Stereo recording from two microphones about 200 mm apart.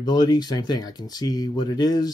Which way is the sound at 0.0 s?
20° left (ahead or behind).